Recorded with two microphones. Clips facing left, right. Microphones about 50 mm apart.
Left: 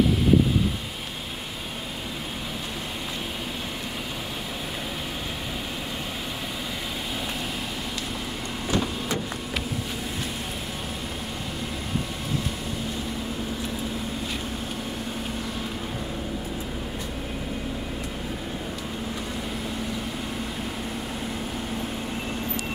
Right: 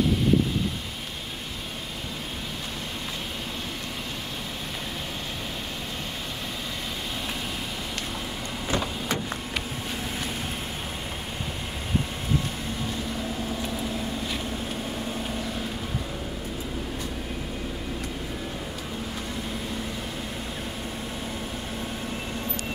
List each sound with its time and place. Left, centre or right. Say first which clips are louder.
8.6 s vehicle: left 1 dB; right